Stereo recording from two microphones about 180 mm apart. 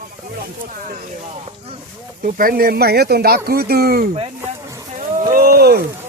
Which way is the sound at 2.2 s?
50° right (ahead or behind).